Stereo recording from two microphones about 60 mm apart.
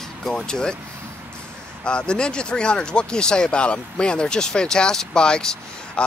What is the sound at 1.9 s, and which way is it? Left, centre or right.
Speech, centre.